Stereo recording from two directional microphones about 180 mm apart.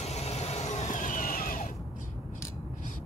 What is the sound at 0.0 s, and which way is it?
Vehicle, 35° left (ahead or behind).